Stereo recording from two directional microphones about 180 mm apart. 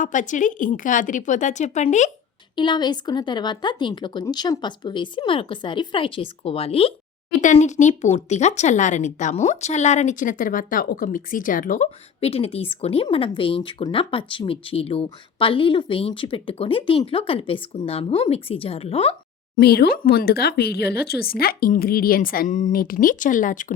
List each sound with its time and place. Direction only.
0.0 s a woman's voice: 45° left (ahead or behind)
2.6 s speech: 25° left (ahead or behind)
19.5 s speech: 60° left (ahead or behind)